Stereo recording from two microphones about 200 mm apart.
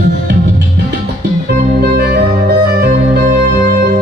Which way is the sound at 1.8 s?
50° right (ahead or behind).